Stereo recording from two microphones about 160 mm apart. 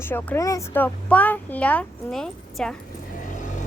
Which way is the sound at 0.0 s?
10° left (ahead or behind).